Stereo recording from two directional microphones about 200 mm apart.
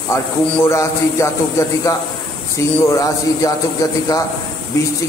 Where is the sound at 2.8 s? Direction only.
15° left (ahead or behind).